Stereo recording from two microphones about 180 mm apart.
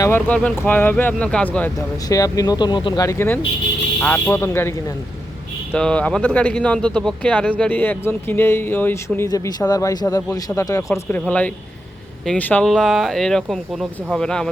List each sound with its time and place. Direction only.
0.0 s speech: 10° left (ahead or behind)
2.0 s speech: 20° left (ahead or behind)
5.7 s speech: 5° left (ahead or behind)